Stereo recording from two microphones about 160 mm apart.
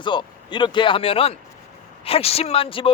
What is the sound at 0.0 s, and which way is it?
Speech, 30° left (ahead or behind).